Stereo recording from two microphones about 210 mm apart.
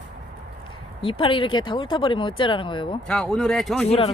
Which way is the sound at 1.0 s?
25° left (ahead or behind).